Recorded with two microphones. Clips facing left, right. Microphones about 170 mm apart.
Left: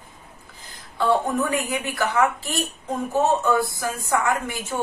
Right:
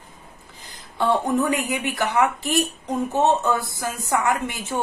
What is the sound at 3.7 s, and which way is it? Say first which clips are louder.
Speech: even; 20° right (ahead or behind).